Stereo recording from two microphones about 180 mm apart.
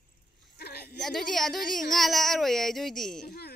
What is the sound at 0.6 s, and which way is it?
Speech, 60° left (ahead or behind).